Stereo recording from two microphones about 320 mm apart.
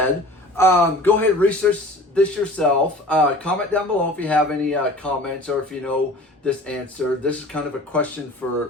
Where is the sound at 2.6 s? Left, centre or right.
Centre.